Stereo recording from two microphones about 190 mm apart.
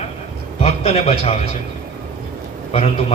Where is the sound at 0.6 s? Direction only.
35° left (ahead or behind).